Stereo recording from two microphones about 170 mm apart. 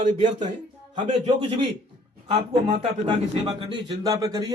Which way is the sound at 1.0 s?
30° right (ahead or behind).